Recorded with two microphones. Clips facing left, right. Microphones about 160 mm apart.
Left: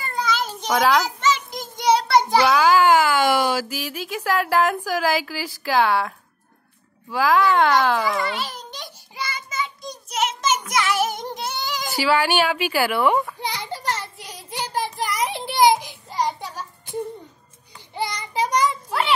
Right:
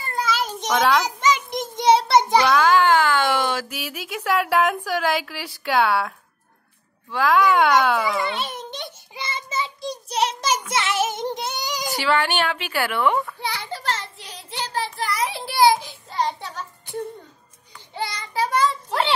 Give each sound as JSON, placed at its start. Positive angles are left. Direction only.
{"t": 0.1, "sound": "a sound", "side_deg": -5}
{"t": 0.7, "sound": "a woman's voice", "side_deg": 0}
{"t": 1.0, "sound": "child singing", "side_deg": -15}
{"t": 2.4, "sound": "a child's voice", "side_deg": 5}
{"t": 8.3, "sound": "a child's voice", "side_deg": -20}
{"t": 9.1, "sound": "child singing", "side_deg": -25}
{"t": 10.7, "sound": "music", "side_deg": -25}
{"t": 11.9, "sound": "children playing", "side_deg": 5}
{"t": 17.9, "sound": "child singing", "side_deg": 15}